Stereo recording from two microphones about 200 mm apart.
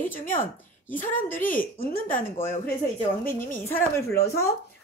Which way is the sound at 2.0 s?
45° left (ahead or behind).